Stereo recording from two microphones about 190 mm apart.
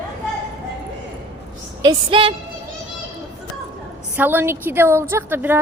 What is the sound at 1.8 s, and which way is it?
Speech, 25° right (ahead or behind).